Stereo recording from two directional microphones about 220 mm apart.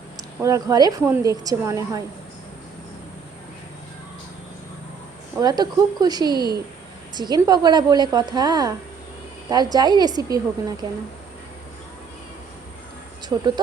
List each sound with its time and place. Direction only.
0.4 s speech: 15° right (ahead or behind)
5.4 s a woman's voice: 15° right (ahead or behind)
13.3 s speech: 10° right (ahead or behind)